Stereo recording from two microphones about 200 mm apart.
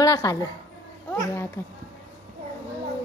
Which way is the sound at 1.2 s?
10° left (ahead or behind).